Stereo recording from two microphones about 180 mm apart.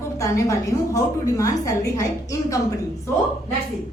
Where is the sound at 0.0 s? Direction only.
15° left (ahead or behind).